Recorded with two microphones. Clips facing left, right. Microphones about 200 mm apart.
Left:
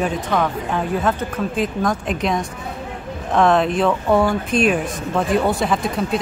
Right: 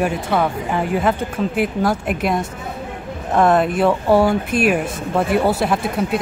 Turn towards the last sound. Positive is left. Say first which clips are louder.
# right 1 dB
turn(degrees=-5)  # may be behind; listen again after turning